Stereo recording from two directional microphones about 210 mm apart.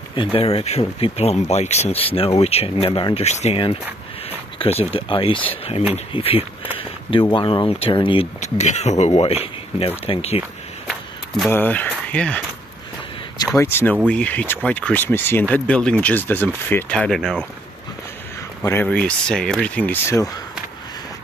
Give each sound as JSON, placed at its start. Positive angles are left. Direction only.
{"t": 0.1, "sound": "speech", "side_deg": 25}
{"t": 10.9, "sound": "a sound", "side_deg": 0}
{"t": 11.5, "sound": "speech", "side_deg": 10}
{"t": 13.6, "sound": "speech", "side_deg": 10}
{"t": 18.6, "sound": "speech", "side_deg": 10}